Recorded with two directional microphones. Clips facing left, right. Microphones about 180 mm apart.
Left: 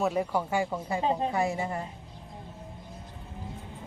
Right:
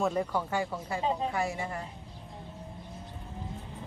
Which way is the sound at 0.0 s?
10° left (ahead or behind).